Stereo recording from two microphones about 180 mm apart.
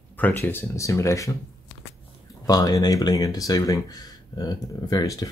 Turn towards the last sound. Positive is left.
turn(degrees=20)  # may be behind; listen again after turning